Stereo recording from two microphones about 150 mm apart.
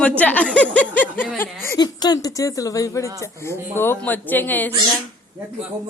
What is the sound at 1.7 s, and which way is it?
Speech, 30° left (ahead or behind).